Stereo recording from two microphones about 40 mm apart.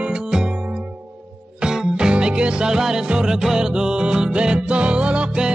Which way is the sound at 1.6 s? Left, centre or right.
Right.